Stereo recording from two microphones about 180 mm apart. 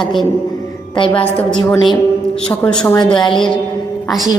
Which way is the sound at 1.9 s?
5° left (ahead or behind).